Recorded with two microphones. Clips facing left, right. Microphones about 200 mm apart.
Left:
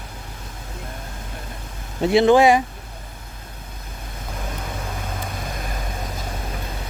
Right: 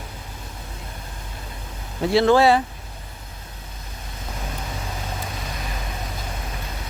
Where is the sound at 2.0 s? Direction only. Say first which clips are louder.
Left 2 dB; 20° left (ahead or behind).